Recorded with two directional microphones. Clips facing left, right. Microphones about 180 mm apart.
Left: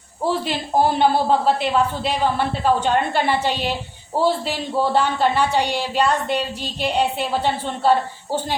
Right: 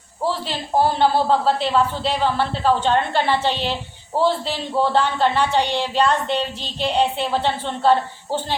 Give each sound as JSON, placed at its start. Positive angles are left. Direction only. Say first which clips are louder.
{"t": 0.9, "sound": "speech", "louder": "even", "side_deg": 15}